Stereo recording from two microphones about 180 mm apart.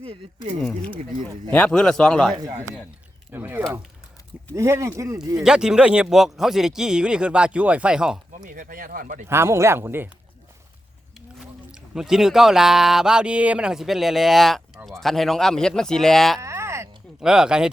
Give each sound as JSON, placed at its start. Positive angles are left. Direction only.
{"t": 0.0, "sound": "speech", "side_deg": -35}
{"t": 0.6, "sound": "speech", "side_deg": 5}
{"t": 2.3, "sound": "a man's voice", "side_deg": -20}
{"t": 5.4, "sound": "speech", "side_deg": -5}
{"t": 8.4, "sound": "speech", "side_deg": -50}
{"t": 9.2, "sound": "speech", "side_deg": -15}
{"t": 11.7, "sound": "speech", "side_deg": -5}
{"t": 16.4, "sound": "a sound", "side_deg": -15}
{"t": 17.2, "sound": "speech", "side_deg": -5}